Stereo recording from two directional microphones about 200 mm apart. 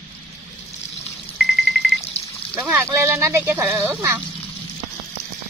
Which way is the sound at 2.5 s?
15° right (ahead or behind).